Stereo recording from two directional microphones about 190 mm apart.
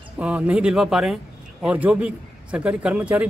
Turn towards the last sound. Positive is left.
turn(degrees=-5)  # may be behind; listen again after turning